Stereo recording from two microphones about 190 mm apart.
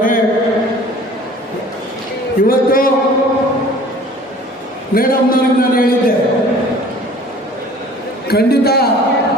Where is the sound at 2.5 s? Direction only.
50° left (ahead or behind).